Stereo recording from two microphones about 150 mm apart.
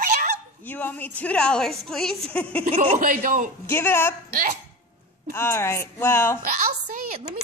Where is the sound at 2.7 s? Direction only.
35° right (ahead or behind).